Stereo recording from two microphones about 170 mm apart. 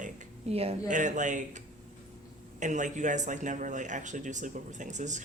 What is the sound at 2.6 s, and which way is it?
Speech, 45° right (ahead or behind).